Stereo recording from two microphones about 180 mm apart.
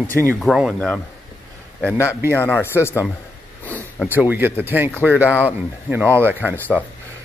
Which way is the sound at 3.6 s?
10° left (ahead or behind).